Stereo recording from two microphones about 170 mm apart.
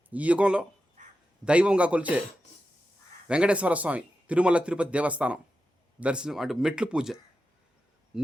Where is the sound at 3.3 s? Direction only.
5° right (ahead or behind).